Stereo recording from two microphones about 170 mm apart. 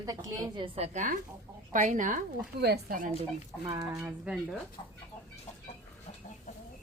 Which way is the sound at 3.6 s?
20° right (ahead or behind).